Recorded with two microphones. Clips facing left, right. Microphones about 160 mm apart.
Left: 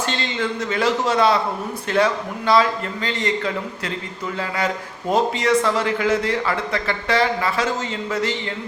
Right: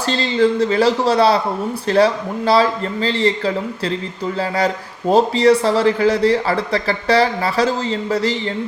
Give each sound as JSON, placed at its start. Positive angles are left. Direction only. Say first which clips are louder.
{"t": 0.1, "sound": "a man's voice", "louder": "right 9 dB", "side_deg": -35}